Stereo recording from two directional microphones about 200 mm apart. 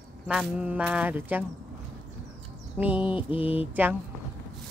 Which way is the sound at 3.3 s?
30° left (ahead or behind).